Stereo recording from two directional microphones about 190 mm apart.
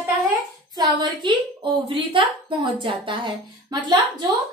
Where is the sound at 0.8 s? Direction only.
25° right (ahead or behind).